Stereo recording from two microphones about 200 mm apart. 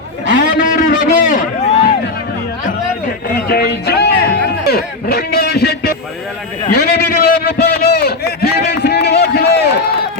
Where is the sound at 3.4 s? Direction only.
50° left (ahead or behind).